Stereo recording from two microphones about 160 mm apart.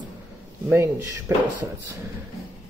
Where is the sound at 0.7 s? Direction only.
15° right (ahead or behind).